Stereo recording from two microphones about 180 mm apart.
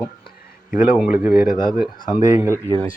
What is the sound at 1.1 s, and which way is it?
Speech, 55° left (ahead or behind).